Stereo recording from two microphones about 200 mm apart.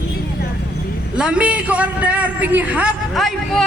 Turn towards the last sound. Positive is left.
turn(degrees=0)  # may be behind; listen again after turning